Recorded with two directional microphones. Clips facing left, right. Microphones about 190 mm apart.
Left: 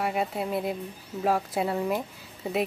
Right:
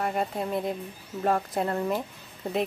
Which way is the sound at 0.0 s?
5° left (ahead or behind).